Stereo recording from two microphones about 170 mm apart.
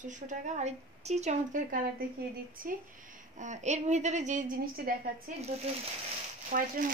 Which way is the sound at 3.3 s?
45° right (ahead or behind).